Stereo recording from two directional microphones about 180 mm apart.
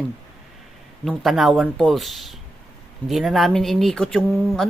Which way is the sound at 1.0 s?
Centre (ahead or behind).